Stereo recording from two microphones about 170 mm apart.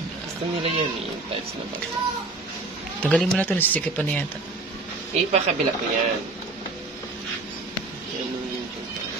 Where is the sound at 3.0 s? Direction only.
10° left (ahead or behind).